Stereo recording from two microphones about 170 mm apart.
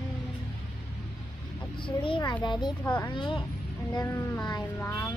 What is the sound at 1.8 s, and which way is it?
Speech, 30° left (ahead or behind).